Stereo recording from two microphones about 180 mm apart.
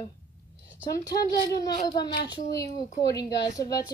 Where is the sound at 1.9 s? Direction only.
25° left (ahead or behind).